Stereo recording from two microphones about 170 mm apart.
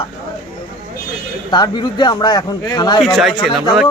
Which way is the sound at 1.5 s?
25° left (ahead or behind).